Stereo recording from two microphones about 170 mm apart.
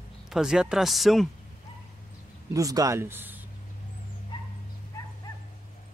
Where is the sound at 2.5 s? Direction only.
20° right (ahead or behind).